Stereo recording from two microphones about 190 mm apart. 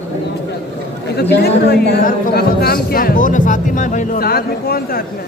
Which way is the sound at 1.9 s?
45° left (ahead or behind).